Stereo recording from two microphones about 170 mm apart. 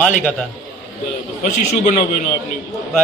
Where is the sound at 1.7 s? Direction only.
40° left (ahead or behind).